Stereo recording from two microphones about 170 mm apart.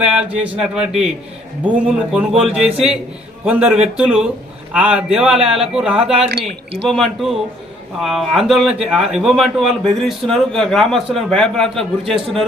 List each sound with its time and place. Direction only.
0.0 s a man's voice: 5° right (ahead or behind)
2.1 s a man's voice: 5° right (ahead or behind)